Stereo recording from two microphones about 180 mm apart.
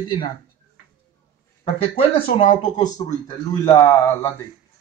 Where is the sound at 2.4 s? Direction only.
25° left (ahead or behind).